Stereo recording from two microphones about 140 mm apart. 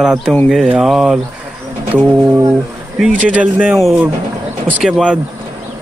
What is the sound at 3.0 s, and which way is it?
Speech, 10° right (ahead or behind).